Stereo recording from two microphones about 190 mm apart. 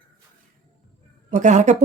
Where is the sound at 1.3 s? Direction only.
40° right (ahead or behind).